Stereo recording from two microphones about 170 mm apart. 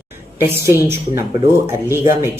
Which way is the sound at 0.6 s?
15° right (ahead or behind).